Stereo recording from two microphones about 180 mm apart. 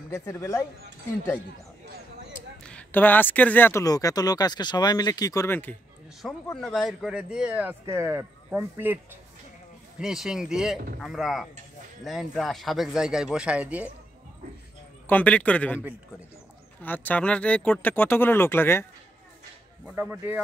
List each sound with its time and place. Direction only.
0.1 s speech: 15° left (ahead or behind)
2.6 s speech: 10° left (ahead or behind); by 13.8 s 5° right (ahead or behind)
15.0 s speech: 10° left (ahead or behind)
16.8 s speech: 10° left (ahead or behind)
20.0 s speech: 10° right (ahead or behind)